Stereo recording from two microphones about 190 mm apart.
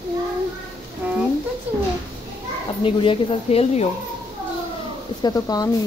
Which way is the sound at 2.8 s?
30° left (ahead or behind).